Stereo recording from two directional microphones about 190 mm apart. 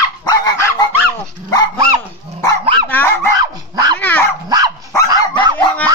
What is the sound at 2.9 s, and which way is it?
Speech, 10° left (ahead or behind).